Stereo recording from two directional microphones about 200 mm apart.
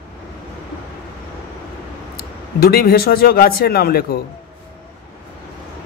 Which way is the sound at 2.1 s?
50° left (ahead or behind).